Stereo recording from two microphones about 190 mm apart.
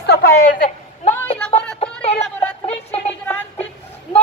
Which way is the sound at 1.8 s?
30° left (ahead or behind).